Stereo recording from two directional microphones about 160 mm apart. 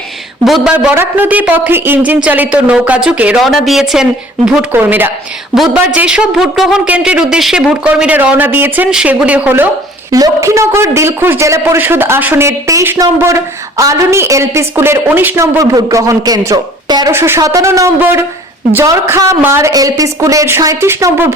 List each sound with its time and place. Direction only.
0.4 s a man's voice: centre (ahead or behind)
10.1 s a man's voice: 20° right (ahead or behind)